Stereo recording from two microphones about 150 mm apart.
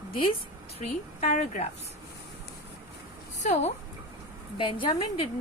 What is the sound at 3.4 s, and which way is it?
Speech, 55° left (ahead or behind).